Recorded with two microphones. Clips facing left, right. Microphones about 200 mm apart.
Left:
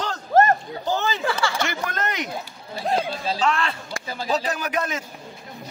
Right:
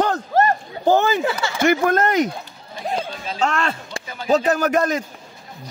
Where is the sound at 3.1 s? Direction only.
35° left (ahead or behind).